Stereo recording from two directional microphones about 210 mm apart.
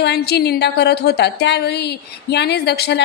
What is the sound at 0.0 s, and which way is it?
A woman's voice, 50° left (ahead or behind).